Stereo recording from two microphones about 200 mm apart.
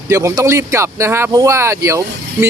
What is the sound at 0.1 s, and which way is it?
Speech, 15° right (ahead or behind).